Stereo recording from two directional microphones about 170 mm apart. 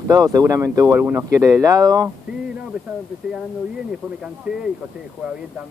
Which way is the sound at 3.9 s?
5° right (ahead or behind).